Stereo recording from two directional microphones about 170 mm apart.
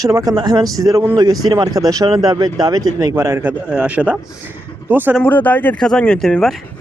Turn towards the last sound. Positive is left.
turn(degrees=0)  # may be behind; listen again after turning